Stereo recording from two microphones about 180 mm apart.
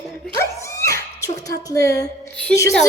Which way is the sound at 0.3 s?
15° left (ahead or behind).